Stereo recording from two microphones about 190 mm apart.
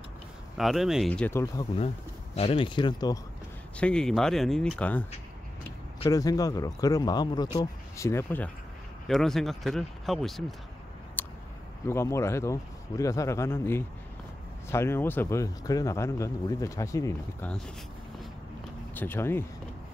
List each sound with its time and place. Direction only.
0.6 s speech: centre (ahead or behind); by 1.7 s 15° left (ahead or behind)
2.3 s speech: 30° left (ahead or behind)
3.7 s speech: 5° left (ahead or behind)
6.0 s speech: 20° left (ahead or behind)
9.0 s speech: centre (ahead or behind)
11.2 s a sound: 10° left (ahead or behind)
11.9 s speech: 15° left (ahead or behind)
18.9 s speech: 10° left (ahead or behind)